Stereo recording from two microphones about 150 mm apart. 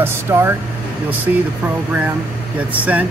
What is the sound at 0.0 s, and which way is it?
Speech, 15° right (ahead or behind).